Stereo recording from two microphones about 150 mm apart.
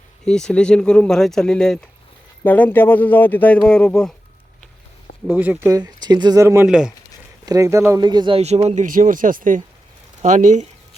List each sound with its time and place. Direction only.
0.3 s speech: 5° left (ahead or behind)
5.3 s speech: 15° right (ahead or behind)
6.7 s speech: 5° right (ahead or behind)
7.4 s speech: 20° right (ahead or behind)
8.0 s speech: 30° right (ahead or behind)
8.4 s speech: 45° right (ahead or behind)